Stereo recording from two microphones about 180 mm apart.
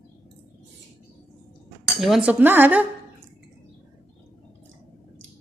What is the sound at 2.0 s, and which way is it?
Cutlery, centre (ahead or behind).